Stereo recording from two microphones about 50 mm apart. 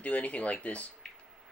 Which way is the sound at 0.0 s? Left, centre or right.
Left.